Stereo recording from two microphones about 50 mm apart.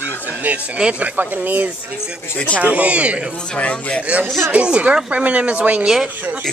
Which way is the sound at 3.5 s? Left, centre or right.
Left.